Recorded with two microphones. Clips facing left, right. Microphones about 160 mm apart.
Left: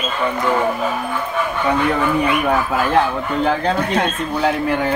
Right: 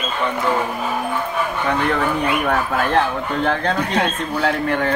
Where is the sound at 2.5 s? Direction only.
5° left (ahead or behind).